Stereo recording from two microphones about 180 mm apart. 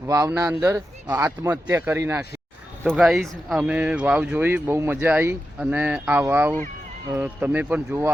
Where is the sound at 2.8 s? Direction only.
Centre (ahead or behind).